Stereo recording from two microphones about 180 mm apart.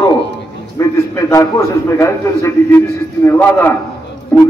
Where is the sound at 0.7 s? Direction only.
15° left (ahead or behind).